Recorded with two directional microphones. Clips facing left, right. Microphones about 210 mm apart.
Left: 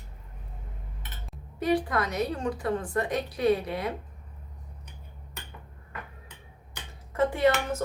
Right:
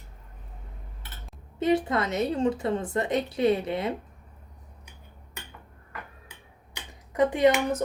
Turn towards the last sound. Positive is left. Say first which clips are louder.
# right 3 dB
turn(degrees=-15)  # may be behind; listen again after turning